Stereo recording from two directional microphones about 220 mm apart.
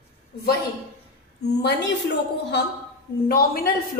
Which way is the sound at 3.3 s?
40° left (ahead or behind).